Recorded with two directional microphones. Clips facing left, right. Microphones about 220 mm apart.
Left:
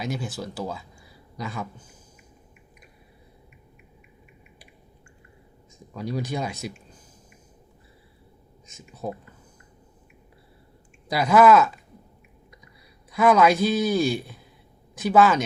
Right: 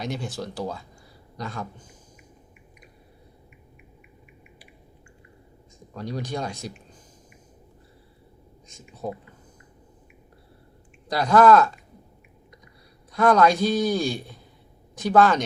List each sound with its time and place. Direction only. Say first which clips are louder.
0.0 s a man's voice: even; centre (ahead or behind)
5.9 s a man's voice: left 2 dB; 5° left (ahead or behind)
8.6 s speech: left 1 dB; 5° left (ahead or behind)
11.1 s a man's voice: even; 10° left (ahead or behind)
13.1 s a man's voice: even; 5° left (ahead or behind)